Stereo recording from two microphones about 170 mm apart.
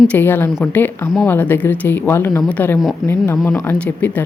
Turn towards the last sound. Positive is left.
turn(degrees=10)  # may be behind; listen again after turning